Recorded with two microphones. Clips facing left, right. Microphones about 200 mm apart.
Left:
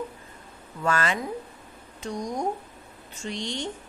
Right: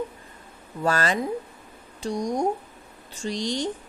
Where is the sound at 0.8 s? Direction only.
35° right (ahead or behind).